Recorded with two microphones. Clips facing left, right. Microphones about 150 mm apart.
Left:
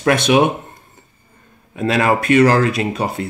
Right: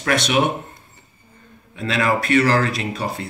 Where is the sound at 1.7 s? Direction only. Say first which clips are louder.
Left 4 dB; 45° left (ahead or behind).